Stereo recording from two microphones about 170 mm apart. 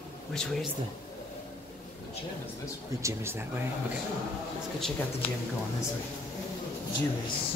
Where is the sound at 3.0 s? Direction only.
15° right (ahead or behind).